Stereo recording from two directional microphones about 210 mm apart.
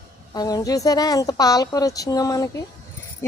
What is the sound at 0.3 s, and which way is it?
Speech, 15° left (ahead or behind).